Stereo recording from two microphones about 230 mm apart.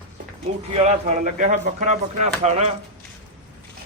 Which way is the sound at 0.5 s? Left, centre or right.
Right.